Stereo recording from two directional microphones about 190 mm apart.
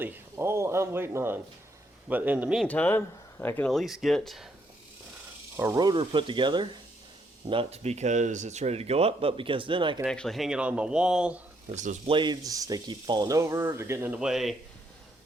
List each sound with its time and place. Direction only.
0.0 s speech: 10° right (ahead or behind)
2.6 s speech: 10° left (ahead or behind)
5.5 s speech: 15° right (ahead or behind)
10.0 s speech: 5° left (ahead or behind)
11.7 s speech: 40° right (ahead or behind)
12.1 s speech: 20° right (ahead or behind); by 14.5 s centre (ahead or behind)